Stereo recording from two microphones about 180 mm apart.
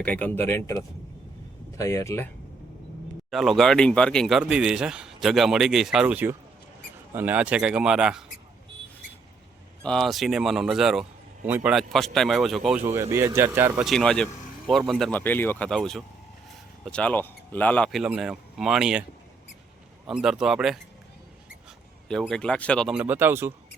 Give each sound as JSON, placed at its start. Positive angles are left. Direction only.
{"t": 0.0, "sound": "speech", "side_deg": 5}
{"t": 3.2, "sound": "speech", "side_deg": 0}
{"t": 9.8, "sound": "speech", "side_deg": 0}
{"t": 12.9, "sound": "speech", "side_deg": -15}
{"t": 13.8, "sound": "speech", "side_deg": 5}
{"t": 20.1, "sound": "speech", "side_deg": -5}
{"t": 22.1, "sound": "speech", "side_deg": 5}
{"t": 23.0, "sound": "speech", "side_deg": -10}